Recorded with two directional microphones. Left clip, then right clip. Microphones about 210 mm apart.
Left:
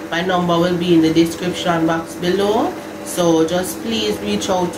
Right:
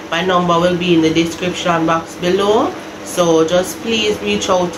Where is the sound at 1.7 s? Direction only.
5° right (ahead or behind).